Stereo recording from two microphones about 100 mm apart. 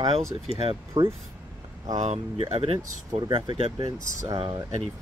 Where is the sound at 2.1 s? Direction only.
85° right.